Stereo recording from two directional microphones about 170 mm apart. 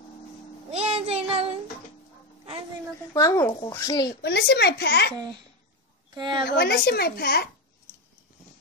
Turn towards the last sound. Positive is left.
turn(degrees=65)  # may be behind; listen again after turning